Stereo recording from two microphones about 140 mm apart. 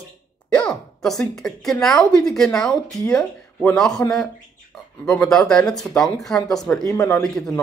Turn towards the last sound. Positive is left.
turn(degrees=5)  # may be behind; listen again after turning